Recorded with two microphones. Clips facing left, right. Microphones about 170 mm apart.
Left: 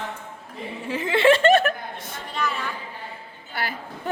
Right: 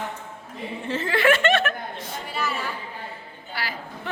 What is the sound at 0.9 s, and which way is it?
Chuckle, 15° left (ahead or behind).